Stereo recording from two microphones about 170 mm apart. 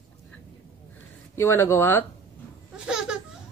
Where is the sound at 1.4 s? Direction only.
15° left (ahead or behind).